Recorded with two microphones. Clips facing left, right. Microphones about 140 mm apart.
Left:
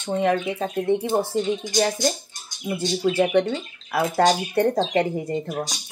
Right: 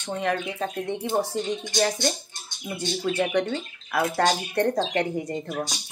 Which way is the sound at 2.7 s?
30° left (ahead or behind).